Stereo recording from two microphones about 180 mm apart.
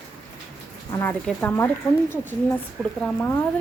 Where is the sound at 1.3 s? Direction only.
10° left (ahead or behind).